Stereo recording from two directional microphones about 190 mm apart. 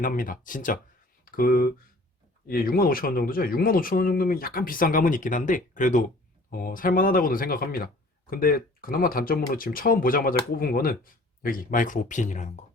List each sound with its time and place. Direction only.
0.0 s speech: 45° left (ahead or behind)